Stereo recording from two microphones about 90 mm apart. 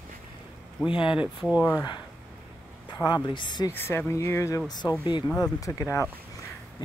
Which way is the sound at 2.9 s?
50° left (ahead or behind).